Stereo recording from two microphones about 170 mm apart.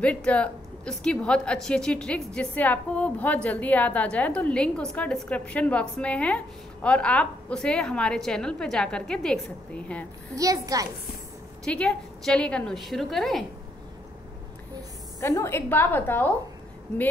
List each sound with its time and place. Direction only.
0.0 s a woman's voice: 5° left (ahead or behind)
10.3 s a child's voice: 20° right (ahead or behind)
11.6 s a woman's voice: 5° left (ahead or behind)
15.1 s a woman's voice: 15° left (ahead or behind)